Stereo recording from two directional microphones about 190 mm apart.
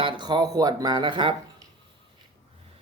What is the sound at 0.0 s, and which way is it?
A man's voice, 25° right (ahead or behind).